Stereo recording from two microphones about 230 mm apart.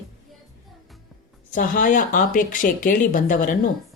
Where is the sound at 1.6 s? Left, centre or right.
Left.